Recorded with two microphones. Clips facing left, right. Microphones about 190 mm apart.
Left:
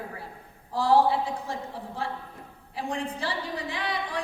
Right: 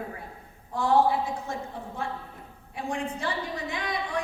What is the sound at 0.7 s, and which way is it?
A woman's voice, 35° left (ahead or behind).